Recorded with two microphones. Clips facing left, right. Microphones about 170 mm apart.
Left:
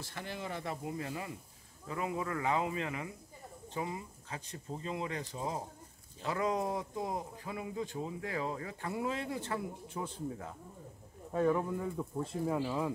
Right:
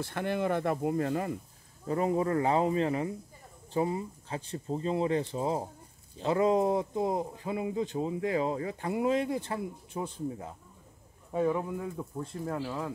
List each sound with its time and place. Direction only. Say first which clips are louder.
0.0 s speech: right 11 dB; 60° right (ahead or behind)
1.9 s speech: right 9 dB; 40° right (ahead or behind); by 10.1 s 25° right (ahead or behind)
11.3 s speech: right 1 dB; 10° right (ahead or behind); by 12.9 s 10° left (ahead or behind)